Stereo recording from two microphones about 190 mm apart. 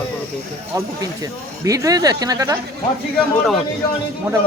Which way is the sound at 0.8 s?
15° right (ahead or behind).